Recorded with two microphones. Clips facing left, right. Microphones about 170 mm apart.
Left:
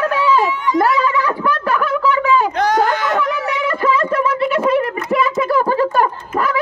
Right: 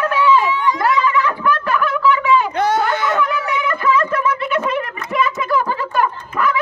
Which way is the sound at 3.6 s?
30° left (ahead or behind).